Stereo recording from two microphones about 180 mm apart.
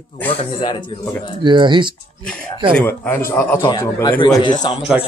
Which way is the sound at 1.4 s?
25° right (ahead or behind).